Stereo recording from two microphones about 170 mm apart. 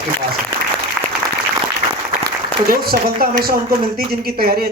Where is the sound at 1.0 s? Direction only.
Centre (ahead or behind).